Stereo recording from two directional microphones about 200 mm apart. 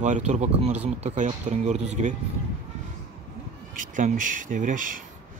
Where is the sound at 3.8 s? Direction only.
40° right (ahead or behind).